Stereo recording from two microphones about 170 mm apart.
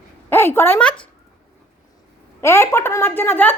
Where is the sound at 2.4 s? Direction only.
15° left (ahead or behind).